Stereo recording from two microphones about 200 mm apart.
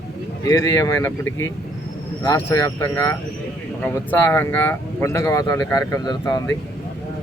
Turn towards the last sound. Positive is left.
turn(degrees=15)  # may be behind; listen again after turning